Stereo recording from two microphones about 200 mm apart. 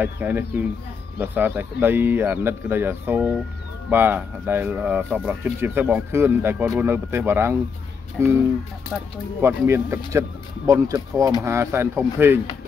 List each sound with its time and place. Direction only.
0.0 s speech: 10° right (ahead or behind)
9.4 s speech: 15° right (ahead or behind)